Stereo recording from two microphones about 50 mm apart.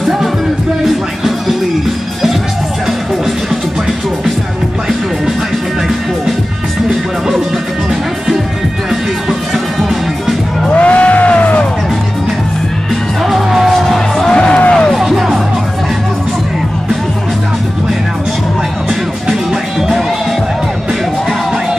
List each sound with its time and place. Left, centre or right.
0.8 s music: centre
9.8 s music: centre
10.7 s music: left
13.2 s music: centre
14.3 s music: centre
15.0 s music: centre